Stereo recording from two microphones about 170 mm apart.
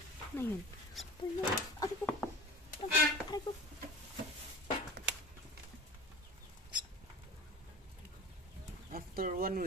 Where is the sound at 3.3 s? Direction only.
20° left (ahead or behind).